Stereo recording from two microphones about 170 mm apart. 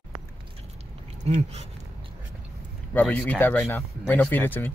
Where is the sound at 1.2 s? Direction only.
40° right (ahead or behind).